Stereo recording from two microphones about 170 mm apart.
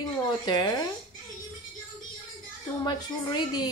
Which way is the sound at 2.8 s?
25° left (ahead or behind).